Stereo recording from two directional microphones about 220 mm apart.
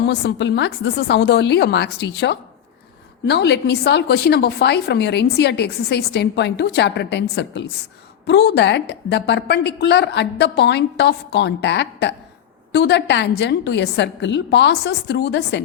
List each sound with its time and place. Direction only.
0.1 s a woman's voice: 50° left (ahead or behind)